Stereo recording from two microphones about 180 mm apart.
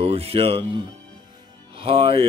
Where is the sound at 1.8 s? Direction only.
30° right (ahead or behind).